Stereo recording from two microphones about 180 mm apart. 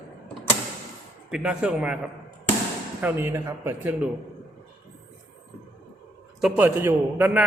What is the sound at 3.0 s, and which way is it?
Speech, 10° right (ahead or behind).